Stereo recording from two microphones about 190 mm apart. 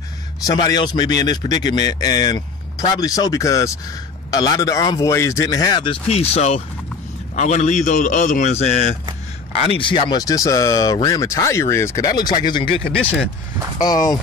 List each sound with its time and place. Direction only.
0.4 s speech: 20° left (ahead or behind)
6.0 s a man's voice: 35° left (ahead or behind)
12.9 s speech: 10° left (ahead or behind)
13.7 s speech: 20° left (ahead or behind)